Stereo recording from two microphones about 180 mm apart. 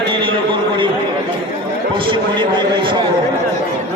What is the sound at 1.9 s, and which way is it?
A man's voice, 30° right (ahead or behind).